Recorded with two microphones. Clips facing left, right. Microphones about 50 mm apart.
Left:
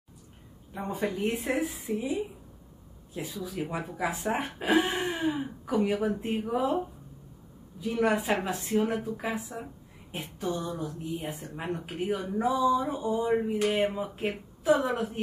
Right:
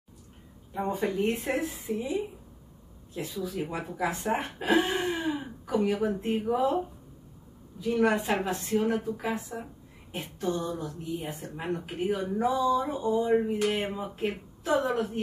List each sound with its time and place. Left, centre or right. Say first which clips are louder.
0.7 s a woman's voice: right 3 dB; centre
5.8 s speech: even; left
6.0 s a woman's voice: right 2 dB; centre
7.8 s a woman's voice: right 1 dB; centre